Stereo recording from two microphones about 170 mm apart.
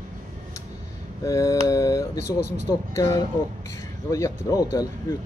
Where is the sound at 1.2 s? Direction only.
20° left (ahead or behind).